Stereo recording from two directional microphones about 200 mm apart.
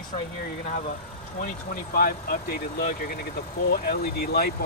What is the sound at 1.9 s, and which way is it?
Speech, 50° left (ahead or behind).